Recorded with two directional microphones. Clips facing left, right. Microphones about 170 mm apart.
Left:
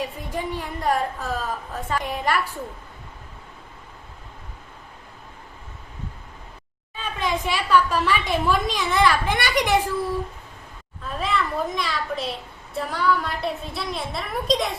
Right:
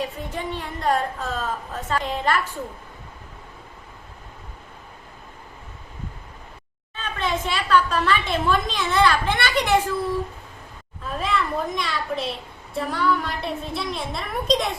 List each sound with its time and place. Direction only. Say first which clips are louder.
0.3 s a woman's voice: left 3 dB; 10° left (ahead or behind)
6.9 s a woman's voice: even; 10° left (ahead or behind)
11.1 s a woman's voice: right 1 dB; centre (ahead or behind)